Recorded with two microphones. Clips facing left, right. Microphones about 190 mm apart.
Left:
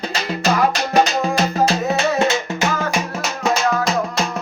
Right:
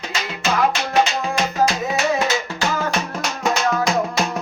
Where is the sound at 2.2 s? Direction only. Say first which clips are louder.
Left 3 dB; 25° left (ahead or behind).